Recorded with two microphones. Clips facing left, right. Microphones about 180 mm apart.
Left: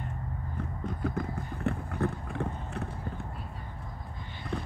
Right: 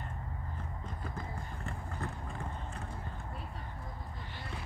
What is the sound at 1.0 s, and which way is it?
Clip-clop, 65° left (ahead or behind).